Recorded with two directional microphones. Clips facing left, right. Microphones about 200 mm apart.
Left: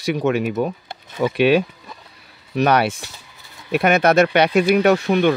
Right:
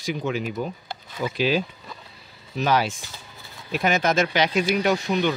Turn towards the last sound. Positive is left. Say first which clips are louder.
# left 7 dB
turn(degrees=60)  # may be behind; listen again after turning